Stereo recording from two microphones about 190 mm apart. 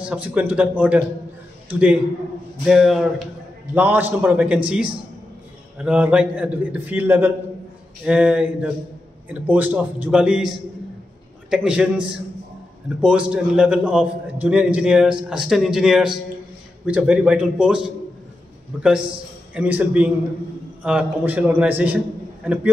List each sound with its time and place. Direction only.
0.0 s a man's voice: 5° right (ahead or behind)
11.5 s a man's voice: 5° right (ahead or behind)
13.0 s a man's voice: 5° right (ahead or behind)
22.4 s a sound: 5° right (ahead or behind)